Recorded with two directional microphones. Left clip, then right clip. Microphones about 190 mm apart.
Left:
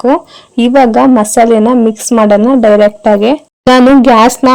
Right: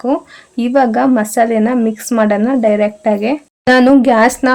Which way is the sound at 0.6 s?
30° left (ahead or behind).